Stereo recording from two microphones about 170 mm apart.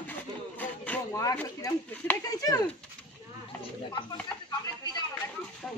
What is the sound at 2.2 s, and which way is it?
Speech, 20° left (ahead or behind).